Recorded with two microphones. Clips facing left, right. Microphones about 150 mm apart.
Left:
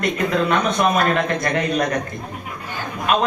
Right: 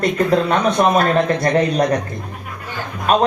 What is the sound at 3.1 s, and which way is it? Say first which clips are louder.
Speech: right 4 dB; 35° right (ahead or behind).